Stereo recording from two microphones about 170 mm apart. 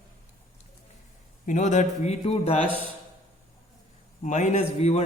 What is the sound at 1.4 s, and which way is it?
Speech, 45° left (ahead or behind).